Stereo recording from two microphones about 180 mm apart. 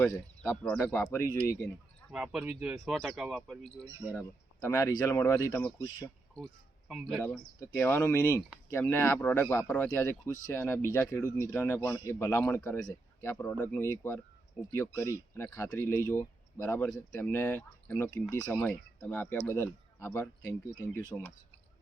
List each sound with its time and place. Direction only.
0.0 s speech: 10° left (ahead or behind)
2.1 s speech: 5° right (ahead or behind)
4.1 s speech: 15° left (ahead or behind)
6.8 s speech: centre (ahead or behind)